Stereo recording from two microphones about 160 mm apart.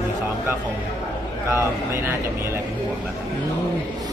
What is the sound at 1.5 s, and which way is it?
Speech, 15° right (ahead or behind).